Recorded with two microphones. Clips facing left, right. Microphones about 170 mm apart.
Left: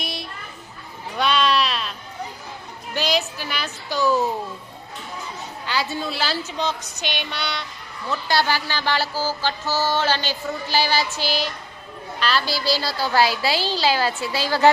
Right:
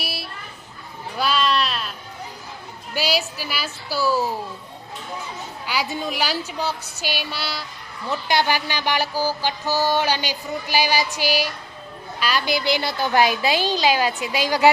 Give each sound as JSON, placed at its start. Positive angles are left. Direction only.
{"t": 0.0, "sound": "children playing", "side_deg": -5}
{"t": 1.2, "sound": "sheep", "side_deg": 0}
{"t": 2.9, "sound": "speech", "side_deg": -10}
{"t": 5.6, "sound": "music", "side_deg": -10}
{"t": 8.1, "sound": "music", "side_deg": -20}